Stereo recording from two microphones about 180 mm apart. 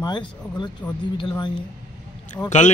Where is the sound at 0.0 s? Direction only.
25° left (ahead or behind).